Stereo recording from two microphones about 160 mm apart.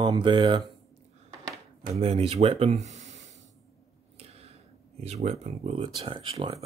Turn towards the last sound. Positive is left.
turn(degrees=-35)  # may be behind; listen again after turning